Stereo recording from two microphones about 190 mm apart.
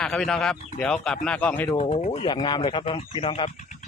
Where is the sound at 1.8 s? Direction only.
35° left (ahead or behind).